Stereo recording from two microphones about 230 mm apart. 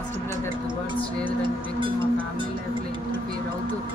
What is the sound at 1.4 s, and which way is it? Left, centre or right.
Cowbell, right.